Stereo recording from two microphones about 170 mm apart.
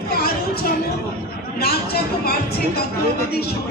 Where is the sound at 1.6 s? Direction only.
65° left (ahead or behind).